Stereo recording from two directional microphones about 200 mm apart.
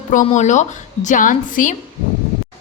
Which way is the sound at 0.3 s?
35° left (ahead or behind).